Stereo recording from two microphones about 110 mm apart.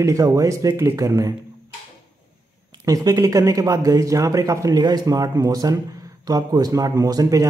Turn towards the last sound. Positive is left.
turn(degrees=-35)  # may be behind; listen again after turning